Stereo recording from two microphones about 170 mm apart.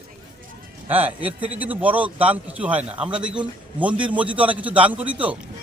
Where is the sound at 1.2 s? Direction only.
30° right (ahead or behind).